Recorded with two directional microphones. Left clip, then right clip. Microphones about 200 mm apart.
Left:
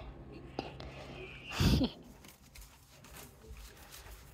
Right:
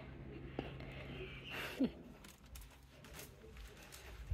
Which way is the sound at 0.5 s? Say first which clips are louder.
Left 5 dB; 5° right (ahead or behind).